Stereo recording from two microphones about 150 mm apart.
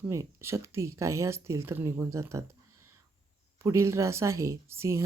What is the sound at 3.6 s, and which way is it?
Speech, 20° right (ahead or behind).